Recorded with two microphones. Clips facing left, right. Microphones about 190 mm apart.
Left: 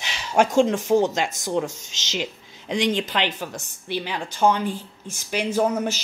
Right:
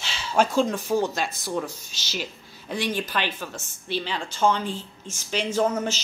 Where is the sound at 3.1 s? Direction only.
20° left (ahead or behind).